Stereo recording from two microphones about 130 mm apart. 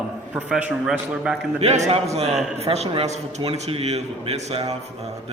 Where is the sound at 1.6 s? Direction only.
60° right (ahead or behind).